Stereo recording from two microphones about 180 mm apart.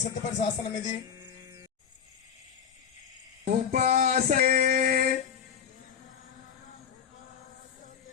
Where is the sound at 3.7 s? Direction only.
50° right (ahead or behind).